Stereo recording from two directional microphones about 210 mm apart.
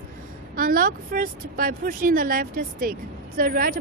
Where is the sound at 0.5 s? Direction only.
40° right (ahead or behind).